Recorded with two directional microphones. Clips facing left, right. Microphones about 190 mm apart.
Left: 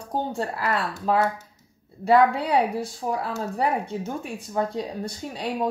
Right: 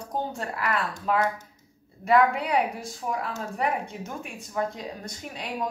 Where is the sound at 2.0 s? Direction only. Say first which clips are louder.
Left 3 dB; 30° left (ahead or behind).